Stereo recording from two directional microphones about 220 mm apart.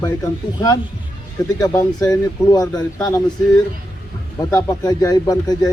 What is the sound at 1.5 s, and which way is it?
Speech, 15° left (ahead or behind).